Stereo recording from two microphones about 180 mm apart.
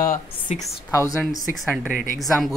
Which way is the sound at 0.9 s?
20° left (ahead or behind).